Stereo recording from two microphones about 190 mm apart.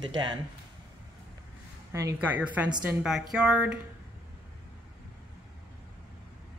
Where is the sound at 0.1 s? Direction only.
25° right (ahead or behind).